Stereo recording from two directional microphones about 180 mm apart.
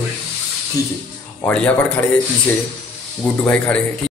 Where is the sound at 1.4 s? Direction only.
5° left (ahead or behind).